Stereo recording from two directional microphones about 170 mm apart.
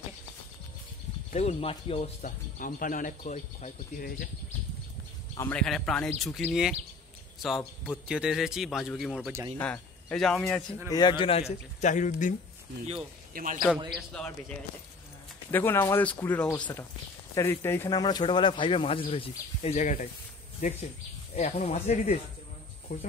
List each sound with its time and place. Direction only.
1.3 s speech: 40° left (ahead or behind)
2.2 s speech: 55° left (ahead or behind)
5.4 s speech: 5° left (ahead or behind)
9.6 s speech: 10° left (ahead or behind)
10.9 s a man's voice: 25° left (ahead or behind)
11.8 s speech: 45° left (ahead or behind)
13.3 s a man's voice: 50° right (ahead or behind)
13.9 s speech: 5° left (ahead or behind)
15.5 s speech: 15° left (ahead or behind)
17.8 s speech: 25° left (ahead or behind); by 20.1 s 45° left (ahead or behind)
21.4 s speech: 40° left (ahead or behind)